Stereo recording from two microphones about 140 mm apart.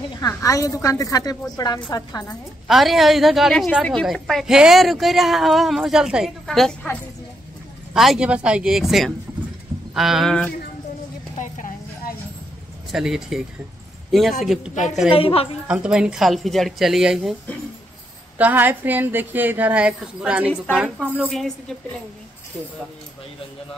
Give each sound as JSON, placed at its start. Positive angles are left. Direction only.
{"t": 0.2, "sound": "a woman's voice", "side_deg": 25}
{"t": 2.7, "sound": "a woman's voice", "side_deg": 0}
{"t": 11.3, "sound": "a sound", "side_deg": 65}
{"t": 12.9, "sound": "a woman's voice", "side_deg": -5}
{"t": 14.4, "sound": "a woman's voice", "side_deg": -5}
{"t": 15.0, "sound": "a woman's voice", "side_deg": 40}
{"t": 15.6, "sound": "a woman's voice", "side_deg": -5}
{"t": 18.4, "sound": "a woman's voice", "side_deg": -15}